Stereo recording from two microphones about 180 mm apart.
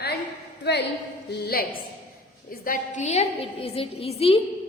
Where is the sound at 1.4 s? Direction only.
55° left (ahead or behind).